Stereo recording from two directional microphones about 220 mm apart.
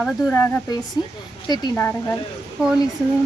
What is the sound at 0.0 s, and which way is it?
Speech, 5° left (ahead or behind).